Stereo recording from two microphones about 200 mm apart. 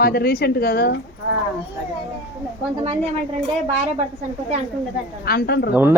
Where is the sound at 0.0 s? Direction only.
50° left (ahead or behind).